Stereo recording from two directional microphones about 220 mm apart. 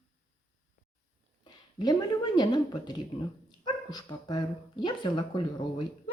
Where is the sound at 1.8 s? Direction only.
20° left (ahead or behind).